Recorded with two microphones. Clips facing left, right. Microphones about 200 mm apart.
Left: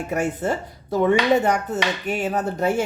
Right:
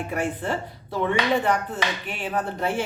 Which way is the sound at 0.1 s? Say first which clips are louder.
Left 5 dB; 45° left (ahead or behind).